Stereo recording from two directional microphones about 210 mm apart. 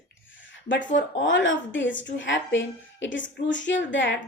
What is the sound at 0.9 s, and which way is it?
A woman's voice, 60° left (ahead or behind).